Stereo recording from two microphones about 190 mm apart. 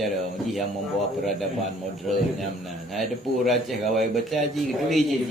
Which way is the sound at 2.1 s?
Centre (ahead or behind).